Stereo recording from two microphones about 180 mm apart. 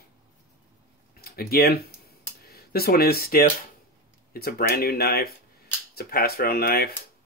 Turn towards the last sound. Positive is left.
turn(degrees=60)  # may be behind; listen again after turning